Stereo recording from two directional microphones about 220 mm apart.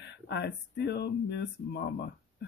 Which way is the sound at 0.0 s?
50° left (ahead or behind).